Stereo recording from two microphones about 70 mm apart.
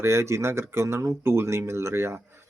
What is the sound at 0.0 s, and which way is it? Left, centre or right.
Speech, right.